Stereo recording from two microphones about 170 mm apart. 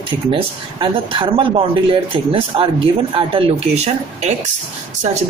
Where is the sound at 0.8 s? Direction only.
30° right (ahead or behind).